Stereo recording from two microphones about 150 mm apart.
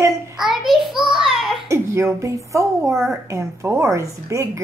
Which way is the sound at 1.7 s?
20° right (ahead or behind).